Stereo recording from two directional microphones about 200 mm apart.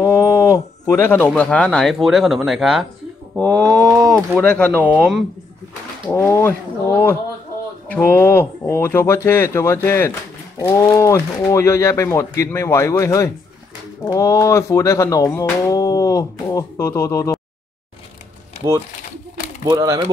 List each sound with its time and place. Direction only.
0.0 s speech: 15° left (ahead or behind); by 2.9 s centre (ahead or behind)
3.4 s mantra: 15° right (ahead or behind)
4.4 s speech: 10° left (ahead or behind)
4.8 s speech: 5° right (ahead or behind)
6.0 s speech: 15° left (ahead or behind)
19.6 s mantra: 15° right (ahead or behind)